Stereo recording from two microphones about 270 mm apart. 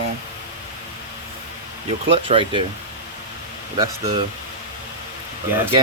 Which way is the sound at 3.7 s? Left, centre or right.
Centre.